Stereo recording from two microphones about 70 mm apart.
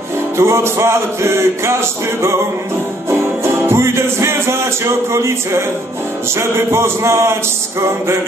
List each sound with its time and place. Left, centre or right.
0.4 s music: right
3.1 s music: right